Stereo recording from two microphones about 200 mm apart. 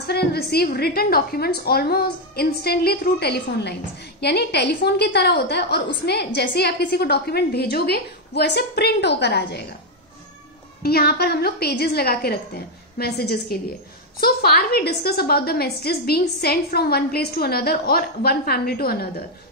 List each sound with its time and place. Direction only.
0.0 s a woman's voice: 55° left (ahead or behind)
10.8 s a woman's voice: 50° left (ahead or behind)